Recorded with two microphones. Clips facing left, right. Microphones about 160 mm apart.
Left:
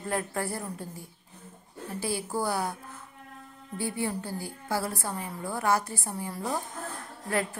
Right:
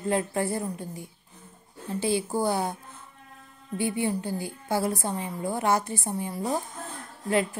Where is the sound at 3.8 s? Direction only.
20° right (ahead or behind).